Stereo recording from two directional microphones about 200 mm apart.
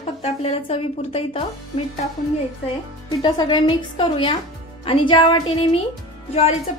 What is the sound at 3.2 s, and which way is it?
A woman's voice, 20° left (ahead or behind).